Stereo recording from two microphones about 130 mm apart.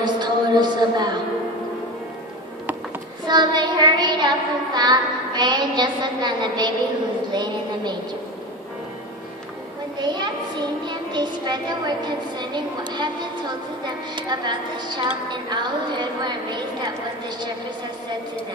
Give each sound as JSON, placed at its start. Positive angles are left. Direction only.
{"t": 0.0, "sound": "a woman's voice", "side_deg": -35}
{"t": 3.3, "sound": "a woman's voice", "side_deg": -35}
{"t": 9.9, "sound": "a woman's voice", "side_deg": -35}